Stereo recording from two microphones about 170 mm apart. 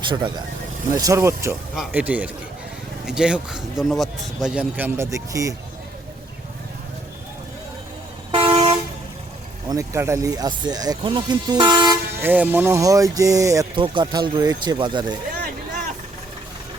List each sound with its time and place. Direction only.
0.1 s speech: 25° right (ahead or behind)
8.3 s toot: 35° right (ahead or behind)
9.6 s speech: 20° right (ahead or behind)
12.2 s speech: 10° right (ahead or behind); by 15.2 s 25° right (ahead or behind)